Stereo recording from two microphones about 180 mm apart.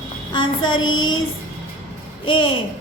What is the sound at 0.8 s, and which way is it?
Child singing, 90° left.